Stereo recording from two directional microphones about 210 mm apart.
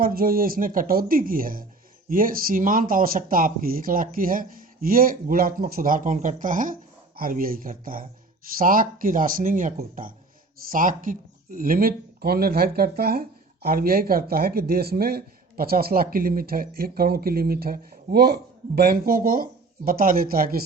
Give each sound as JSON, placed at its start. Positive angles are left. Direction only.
{"t": 0.0, "sound": "speech", "side_deg": -45}